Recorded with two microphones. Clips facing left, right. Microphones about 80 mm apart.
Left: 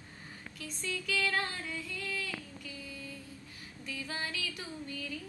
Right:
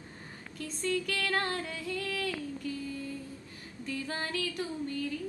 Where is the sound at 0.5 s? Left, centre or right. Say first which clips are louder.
Right 8 dB; right.